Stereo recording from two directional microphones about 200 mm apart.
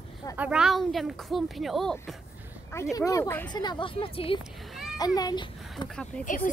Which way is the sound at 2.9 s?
15° left (ahead or behind).